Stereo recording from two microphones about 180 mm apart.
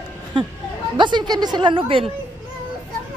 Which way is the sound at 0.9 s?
25° right (ahead or behind).